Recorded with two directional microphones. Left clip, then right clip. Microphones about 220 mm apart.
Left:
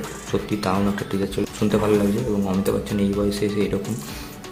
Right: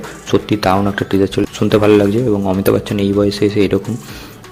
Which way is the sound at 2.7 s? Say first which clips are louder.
Right 10 dB; 30° right (ahead or behind).